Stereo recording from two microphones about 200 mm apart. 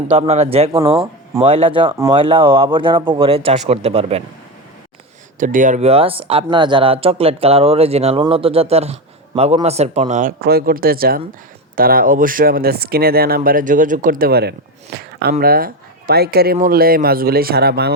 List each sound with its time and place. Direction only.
0.1 s speech: 30° right (ahead or behind)
5.4 s a man's voice: 40° right (ahead or behind)